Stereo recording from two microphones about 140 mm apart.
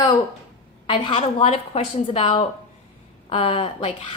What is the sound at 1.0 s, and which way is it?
A woman's voice, 40° left (ahead or behind).